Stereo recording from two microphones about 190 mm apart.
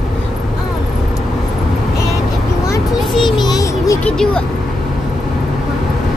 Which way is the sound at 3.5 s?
15° left (ahead or behind).